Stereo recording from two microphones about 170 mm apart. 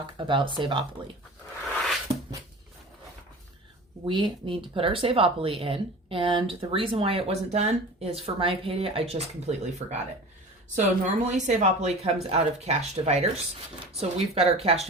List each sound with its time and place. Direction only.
0.2 s speech: 30° right (ahead or behind)
4.0 s speech: 30° right (ahead or behind)